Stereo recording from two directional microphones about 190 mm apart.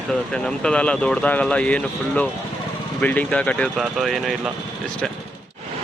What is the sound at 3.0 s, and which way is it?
Speech, 5° left (ahead or behind).